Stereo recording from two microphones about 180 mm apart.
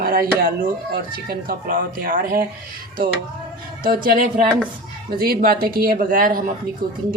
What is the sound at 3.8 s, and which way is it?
A woman's voice, 55° right (ahead or behind).